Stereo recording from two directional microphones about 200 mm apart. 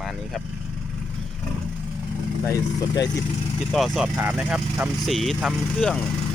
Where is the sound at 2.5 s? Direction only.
20° left (ahead or behind).